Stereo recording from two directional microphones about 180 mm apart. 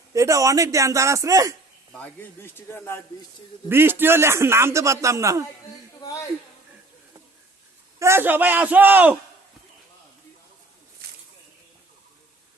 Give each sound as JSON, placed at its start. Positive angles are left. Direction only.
{"t": 0.1, "sound": "a man's voice", "side_deg": -20}
{"t": 1.9, "sound": "speech", "side_deg": 10}
{"t": 3.7, "sound": "a man's voice", "side_deg": -10}
{"t": 6.0, "sound": "speech", "side_deg": 20}
{"t": 7.9, "sound": "a man's voice", "side_deg": -15}
{"t": 11.0, "sound": "a sound", "side_deg": -60}